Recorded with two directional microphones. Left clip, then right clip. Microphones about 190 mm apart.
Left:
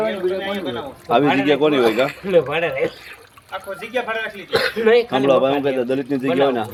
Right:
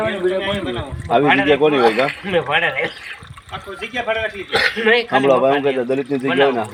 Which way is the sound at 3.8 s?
15° right (ahead or behind).